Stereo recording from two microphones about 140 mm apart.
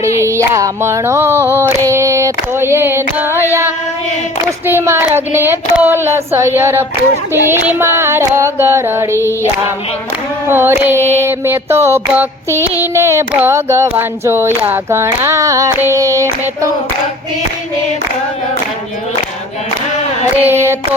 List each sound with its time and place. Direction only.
0.2 s child singing: 20° right (ahead or behind)
4.6 s music: 15° right (ahead or behind)
9.1 s female singing: 20° left (ahead or behind)
10.5 s music: 15° right (ahead or behind)
12.8 s child singing: 20° right (ahead or behind)
20.3 s music: 15° right (ahead or behind)